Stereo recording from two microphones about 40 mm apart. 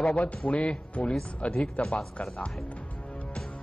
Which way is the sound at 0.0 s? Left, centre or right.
Left.